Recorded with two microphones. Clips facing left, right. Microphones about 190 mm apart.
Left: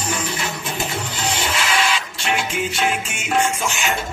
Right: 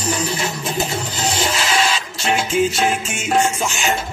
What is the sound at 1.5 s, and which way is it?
Music, 35° right (ahead or behind).